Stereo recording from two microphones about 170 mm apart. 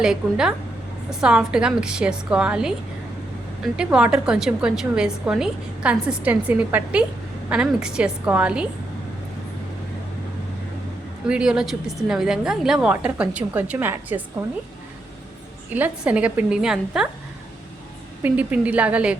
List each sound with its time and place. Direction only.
0.0 s a woman's voice: 5° right (ahead or behind)
3.8 s a woman's voice: 5° right (ahead or behind)
11.3 s a woman's voice: 5° right (ahead or behind)
15.7 s a woman's voice: 10° right (ahead or behind)
18.2 s a woman's voice: 10° right (ahead or behind)